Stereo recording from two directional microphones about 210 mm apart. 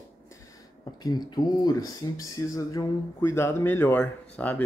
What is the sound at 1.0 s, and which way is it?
Speech, 20° left (ahead or behind).